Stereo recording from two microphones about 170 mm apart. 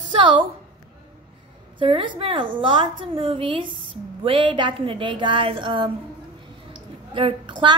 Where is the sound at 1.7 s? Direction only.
30° right (ahead or behind).